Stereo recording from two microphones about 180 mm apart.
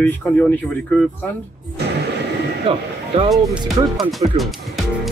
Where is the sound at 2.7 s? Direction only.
30° right (ahead or behind).